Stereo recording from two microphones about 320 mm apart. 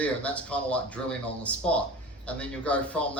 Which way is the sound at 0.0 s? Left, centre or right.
Centre.